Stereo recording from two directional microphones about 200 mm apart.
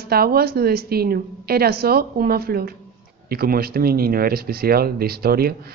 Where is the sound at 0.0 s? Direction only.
50° right (ahead or behind).